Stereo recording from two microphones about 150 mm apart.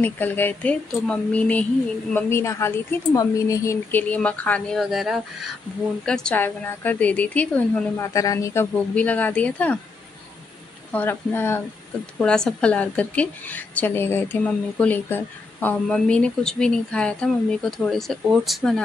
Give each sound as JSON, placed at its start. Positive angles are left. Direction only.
{"t": 0.0, "sound": "a woman's voice", "side_deg": 10}
{"t": 8.7, "sound": "a woman's voice", "side_deg": 10}
{"t": 10.9, "sound": "a woman's voice", "side_deg": 10}
{"t": 12.2, "sound": "a woman's voice", "side_deg": 5}